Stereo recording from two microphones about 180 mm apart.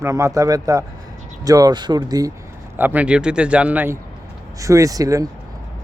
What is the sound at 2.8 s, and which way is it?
Speech, 10° right (ahead or behind).